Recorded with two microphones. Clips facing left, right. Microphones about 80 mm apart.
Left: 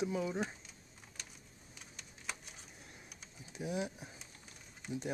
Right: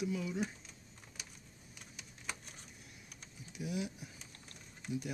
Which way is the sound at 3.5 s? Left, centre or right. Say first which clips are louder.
Left 1 dB; left.